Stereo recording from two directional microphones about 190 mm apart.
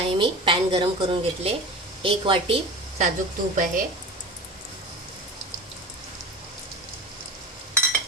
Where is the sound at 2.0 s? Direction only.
30° right (ahead or behind).